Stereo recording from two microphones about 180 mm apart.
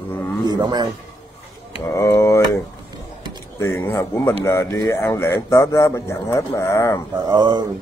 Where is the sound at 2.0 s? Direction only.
15° left (ahead or behind).